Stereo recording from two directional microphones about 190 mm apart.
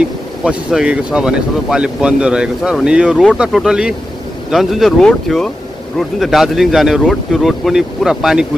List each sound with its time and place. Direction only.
0.4 s speech: 5° right (ahead or behind)